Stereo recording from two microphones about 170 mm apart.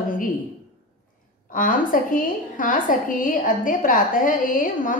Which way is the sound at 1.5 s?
50° left (ahead or behind).